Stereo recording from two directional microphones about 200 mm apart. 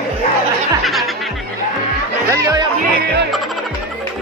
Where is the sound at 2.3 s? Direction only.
20° right (ahead or behind).